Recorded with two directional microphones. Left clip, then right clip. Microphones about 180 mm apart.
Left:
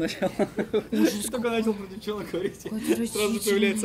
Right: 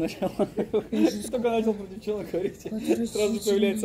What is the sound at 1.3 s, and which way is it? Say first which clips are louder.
Speech: right 2 dB; 45° left (ahead or behind).